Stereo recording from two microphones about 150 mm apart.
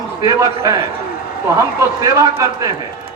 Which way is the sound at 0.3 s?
20° right (ahead or behind).